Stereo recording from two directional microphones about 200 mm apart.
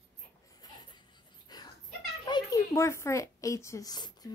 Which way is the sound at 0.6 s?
20° left (ahead or behind).